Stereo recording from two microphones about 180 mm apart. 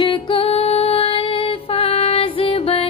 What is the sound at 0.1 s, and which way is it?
Music, 30° left (ahead or behind).